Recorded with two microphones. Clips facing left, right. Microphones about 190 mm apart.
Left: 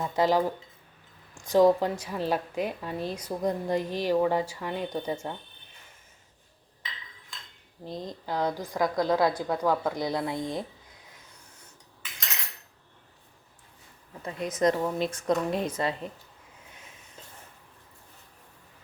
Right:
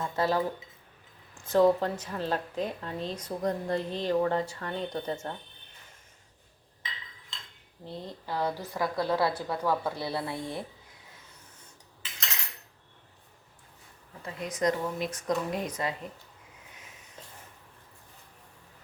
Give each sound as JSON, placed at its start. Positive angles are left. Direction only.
{"t": 0.0, "sound": "a woman's voice", "side_deg": 15}
{"t": 1.5, "sound": "a woman's voice", "side_deg": 15}
{"t": 7.9, "sound": "a woman's voice", "side_deg": 15}
{"t": 14.2, "sound": "a woman's voice", "side_deg": 25}